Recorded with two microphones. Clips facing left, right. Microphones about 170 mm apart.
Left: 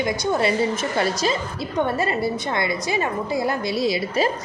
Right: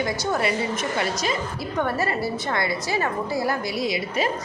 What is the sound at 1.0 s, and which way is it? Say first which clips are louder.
A woman's voice: left 3 dB; 30° left (ahead or behind).